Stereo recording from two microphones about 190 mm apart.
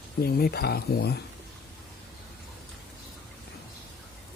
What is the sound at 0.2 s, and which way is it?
Speech, 55° left (ahead or behind).